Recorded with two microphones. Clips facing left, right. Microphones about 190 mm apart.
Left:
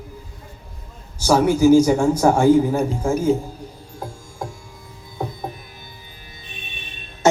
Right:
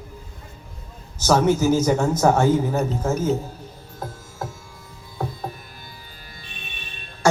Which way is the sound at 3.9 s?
15° left (ahead or behind).